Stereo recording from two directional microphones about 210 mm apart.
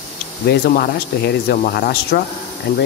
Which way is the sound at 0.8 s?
50° left (ahead or behind).